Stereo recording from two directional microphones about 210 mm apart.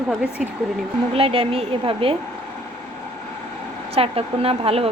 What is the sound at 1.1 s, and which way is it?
A woman's voice, 25° right (ahead or behind).